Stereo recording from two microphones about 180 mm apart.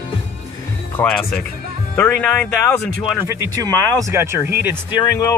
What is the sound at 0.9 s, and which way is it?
Speech, 10° left (ahead or behind).